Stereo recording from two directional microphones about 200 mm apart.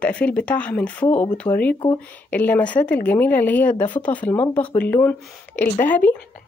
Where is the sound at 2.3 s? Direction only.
10° left (ahead or behind).